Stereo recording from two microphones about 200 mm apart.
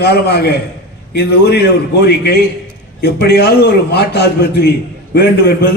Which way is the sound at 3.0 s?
55° left (ahead or behind).